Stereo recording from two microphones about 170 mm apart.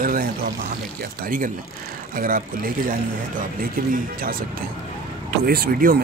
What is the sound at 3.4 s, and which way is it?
Speech, 55° right (ahead or behind).